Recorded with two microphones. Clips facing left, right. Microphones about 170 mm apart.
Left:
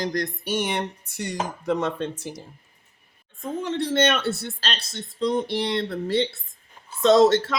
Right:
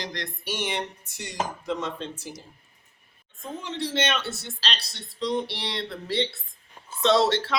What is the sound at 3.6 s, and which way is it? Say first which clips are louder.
Speech: left 6 dB; 50° left (ahead or behind).